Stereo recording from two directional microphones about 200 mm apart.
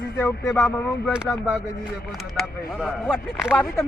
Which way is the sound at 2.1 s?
Centre (ahead or behind).